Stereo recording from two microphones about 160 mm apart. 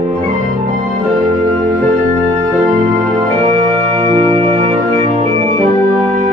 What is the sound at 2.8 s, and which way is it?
Music, 45° right (ahead or behind).